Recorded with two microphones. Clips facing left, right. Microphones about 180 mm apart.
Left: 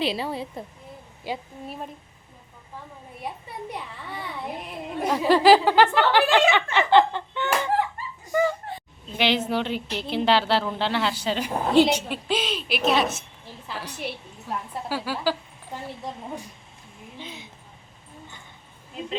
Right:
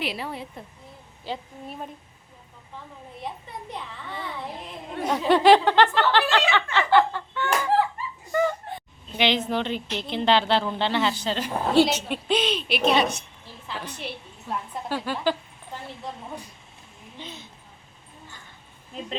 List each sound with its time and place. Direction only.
0.0 s a woman's voice: 30° left (ahead or behind)
1.3 s a woman's voice: 10° left (ahead or behind)
1.6 s speech: centre (ahead or behind)
5.0 s speech: 5° left (ahead or behind)
6.5 s a sound: 15° left (ahead or behind)
8.3 s a sound: 5° left (ahead or behind)
9.1 s a woman's voice: 5° left (ahead or behind)
12.0 s a woman's voice: centre (ahead or behind)
17.2 s a woman's voice: 10° left (ahead or behind)